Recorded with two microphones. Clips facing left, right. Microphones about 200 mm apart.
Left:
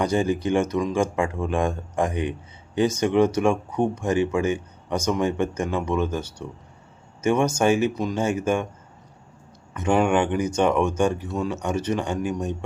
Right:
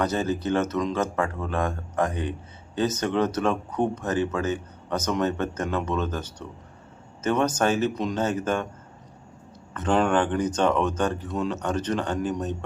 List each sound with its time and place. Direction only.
0.0 s speech: 15° left (ahead or behind)
9.7 s speech: 10° left (ahead or behind)